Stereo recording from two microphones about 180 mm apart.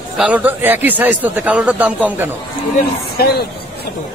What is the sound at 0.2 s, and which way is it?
A man's voice, 10° right (ahead or behind).